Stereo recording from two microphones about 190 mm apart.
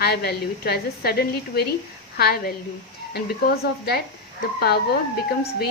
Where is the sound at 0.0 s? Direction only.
60° left (ahead or behind).